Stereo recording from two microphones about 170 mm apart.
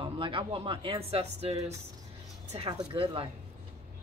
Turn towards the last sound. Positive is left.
turn(degrees=-30)  # may be behind; listen again after turning